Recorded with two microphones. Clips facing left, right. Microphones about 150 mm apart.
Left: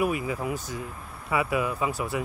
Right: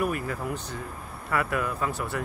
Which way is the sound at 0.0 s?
5° left (ahead or behind).